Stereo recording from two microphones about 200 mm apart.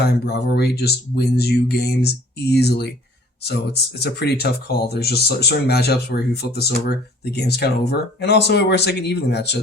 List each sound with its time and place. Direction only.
0.0 s speech: 55° left (ahead or behind)